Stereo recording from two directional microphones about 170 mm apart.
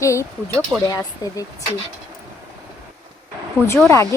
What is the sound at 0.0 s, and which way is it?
Speech, 15° left (ahead or behind).